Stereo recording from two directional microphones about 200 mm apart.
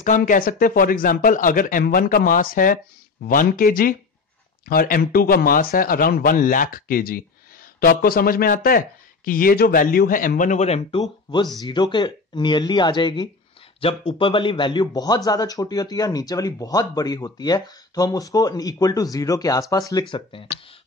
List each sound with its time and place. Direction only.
0.0 s speech: 40° left (ahead or behind); by 20.4 s 25° left (ahead or behind)